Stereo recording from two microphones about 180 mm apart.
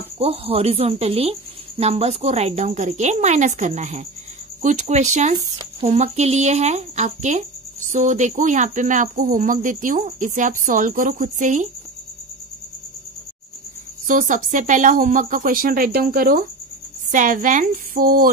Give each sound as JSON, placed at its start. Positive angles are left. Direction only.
{"t": 0.2, "sound": "speech", "side_deg": -35}
{"t": 14.0, "sound": "speech", "side_deg": -45}